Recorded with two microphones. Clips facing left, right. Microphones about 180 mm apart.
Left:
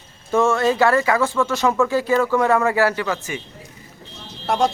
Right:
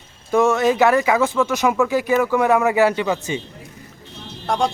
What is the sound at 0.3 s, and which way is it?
Speech, 15° right (ahead or behind).